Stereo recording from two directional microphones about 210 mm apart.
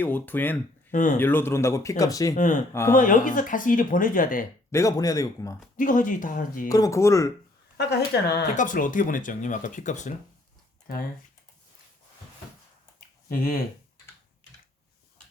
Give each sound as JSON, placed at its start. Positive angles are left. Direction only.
{"t": 0.0, "sound": "speech", "side_deg": 10}
{"t": 0.9, "sound": "speech", "side_deg": 35}
{"t": 1.2, "sound": "speech", "side_deg": 10}
{"t": 2.3, "sound": "speech", "side_deg": 35}
{"t": 4.7, "sound": "speech", "side_deg": 15}
{"t": 5.7, "sound": "speech", "side_deg": 40}
{"t": 6.7, "sound": "speech", "side_deg": 15}
{"t": 7.8, "sound": "speech", "side_deg": 50}
{"t": 8.5, "sound": "speech", "side_deg": 40}
{"t": 13.2, "sound": "speech", "side_deg": 45}